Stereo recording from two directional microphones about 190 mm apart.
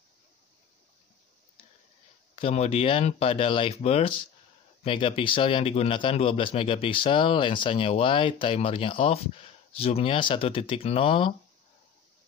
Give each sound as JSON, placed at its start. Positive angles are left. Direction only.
{"t": 2.3, "sound": "speech", "side_deg": 30}